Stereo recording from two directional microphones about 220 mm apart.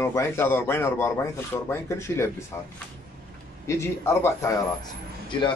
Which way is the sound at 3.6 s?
10° left (ahead or behind).